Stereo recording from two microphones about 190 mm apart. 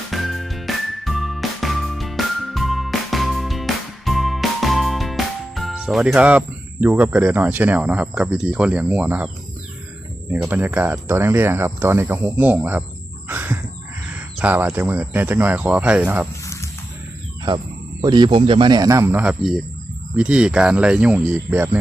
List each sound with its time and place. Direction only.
0.1 s music: centre (ahead or behind)
10.3 s speech: 10° right (ahead or behind)
13.2 s a sound: 10° right (ahead or behind)
14.1 s speech: 10° right (ahead or behind)
18.0 s speech: 25° right (ahead or behind)